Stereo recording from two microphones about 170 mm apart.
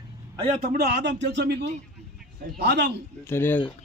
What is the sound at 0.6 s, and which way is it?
A man's voice, 60° right (ahead or behind).